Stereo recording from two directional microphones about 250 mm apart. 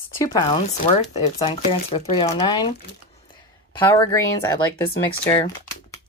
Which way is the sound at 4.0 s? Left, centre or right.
Centre.